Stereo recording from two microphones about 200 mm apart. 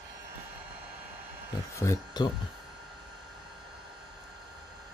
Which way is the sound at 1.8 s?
15° left (ahead or behind).